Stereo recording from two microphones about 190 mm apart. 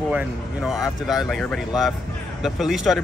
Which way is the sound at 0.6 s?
Centre (ahead or behind).